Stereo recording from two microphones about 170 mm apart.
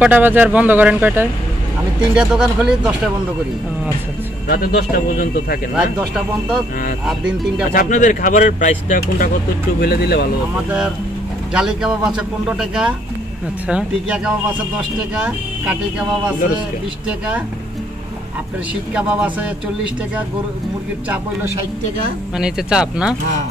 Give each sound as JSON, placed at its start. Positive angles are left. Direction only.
{"t": 0.0, "sound": "speech", "side_deg": -10}
{"t": 4.5, "sound": "speech", "side_deg": 65}
{"t": 5.8, "sound": "speech", "side_deg": -5}
{"t": 7.7, "sound": "speech", "side_deg": 50}
{"t": 9.8, "sound": "speech", "side_deg": 70}
{"t": 11.5, "sound": "speech", "side_deg": -5}
{"t": 18.9, "sound": "speech", "side_deg": -5}
{"t": 22.4, "sound": "speech", "side_deg": -5}